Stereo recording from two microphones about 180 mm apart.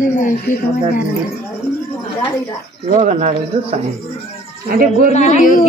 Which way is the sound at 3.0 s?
40° right (ahead or behind).